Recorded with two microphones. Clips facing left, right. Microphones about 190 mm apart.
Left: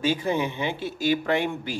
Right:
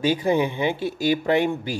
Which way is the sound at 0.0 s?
10° right (ahead or behind).